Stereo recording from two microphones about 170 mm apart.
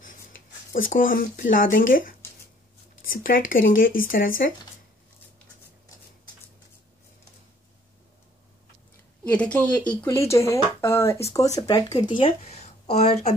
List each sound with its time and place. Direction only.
0.7 s speech: 55° left (ahead or behind)
9.2 s speech: 10° left (ahead or behind); by 13.3 s 40° left (ahead or behind)